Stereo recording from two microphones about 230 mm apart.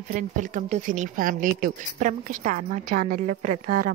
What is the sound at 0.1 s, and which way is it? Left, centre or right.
A woman's voice, right.